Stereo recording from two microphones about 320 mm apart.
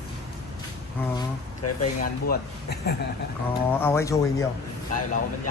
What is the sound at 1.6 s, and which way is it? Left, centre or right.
Speech, left.